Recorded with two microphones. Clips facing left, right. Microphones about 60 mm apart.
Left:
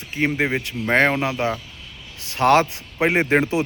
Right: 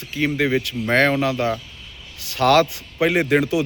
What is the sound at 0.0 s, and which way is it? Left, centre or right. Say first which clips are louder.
Speech: right 1 dB; left.